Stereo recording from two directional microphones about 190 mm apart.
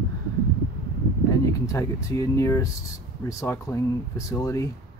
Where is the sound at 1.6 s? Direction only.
15° left (ahead or behind).